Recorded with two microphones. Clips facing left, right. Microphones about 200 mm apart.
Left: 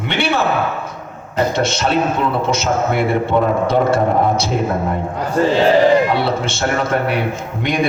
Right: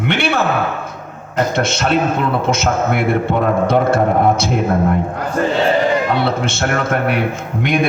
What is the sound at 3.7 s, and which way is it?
Speech, 55° right (ahead or behind).